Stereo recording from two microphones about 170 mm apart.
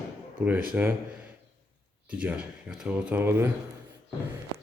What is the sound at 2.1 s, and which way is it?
Speech, 10° right (ahead or behind).